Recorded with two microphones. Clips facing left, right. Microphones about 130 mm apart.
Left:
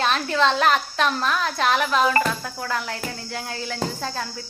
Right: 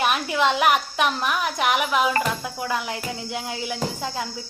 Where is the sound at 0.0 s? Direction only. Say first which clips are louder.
Left 1 dB; 15° right (ahead or behind).